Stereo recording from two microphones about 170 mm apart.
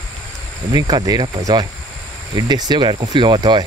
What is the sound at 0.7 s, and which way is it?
Speech, 25° right (ahead or behind).